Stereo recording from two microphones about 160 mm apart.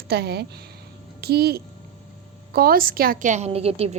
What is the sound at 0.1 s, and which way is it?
Speech, 90° right.